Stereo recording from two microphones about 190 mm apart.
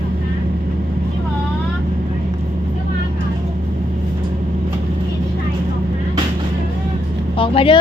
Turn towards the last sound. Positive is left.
turn(degrees=30)  # may be behind; listen again after turning